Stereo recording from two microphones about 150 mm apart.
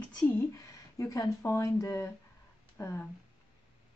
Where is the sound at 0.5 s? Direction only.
25° left (ahead or behind).